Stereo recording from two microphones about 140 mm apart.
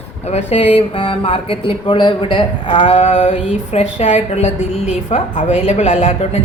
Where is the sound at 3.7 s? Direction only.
55° left (ahead or behind).